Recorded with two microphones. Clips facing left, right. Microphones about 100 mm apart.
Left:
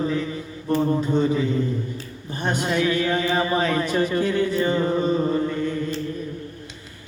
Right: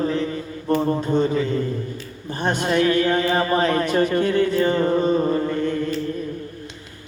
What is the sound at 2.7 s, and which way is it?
Music, 50° right (ahead or behind).